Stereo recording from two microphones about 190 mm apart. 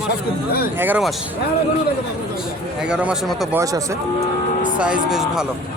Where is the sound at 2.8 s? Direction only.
5° right (ahead or behind).